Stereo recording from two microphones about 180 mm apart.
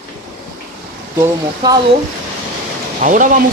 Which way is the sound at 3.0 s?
45° right (ahead or behind).